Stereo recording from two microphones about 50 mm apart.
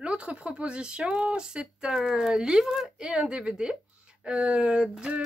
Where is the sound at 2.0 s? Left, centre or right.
Centre.